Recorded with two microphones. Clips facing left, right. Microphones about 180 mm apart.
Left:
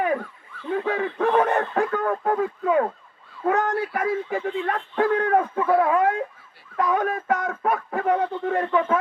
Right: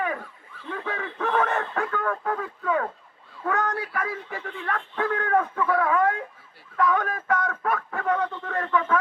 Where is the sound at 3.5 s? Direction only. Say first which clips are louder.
Left 4 dB; 30° left (ahead or behind).